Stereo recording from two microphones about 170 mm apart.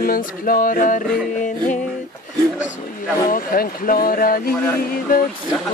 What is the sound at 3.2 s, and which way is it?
Speech, 60° left (ahead or behind).